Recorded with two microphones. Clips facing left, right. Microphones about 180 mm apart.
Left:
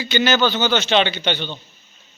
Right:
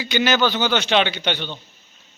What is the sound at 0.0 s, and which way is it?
A man's voice, 15° right (ahead or behind).